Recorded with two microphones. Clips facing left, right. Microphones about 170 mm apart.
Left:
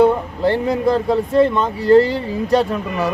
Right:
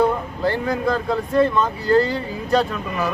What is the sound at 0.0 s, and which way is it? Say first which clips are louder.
Speech: left 5 dB; 25° left (ahead or behind).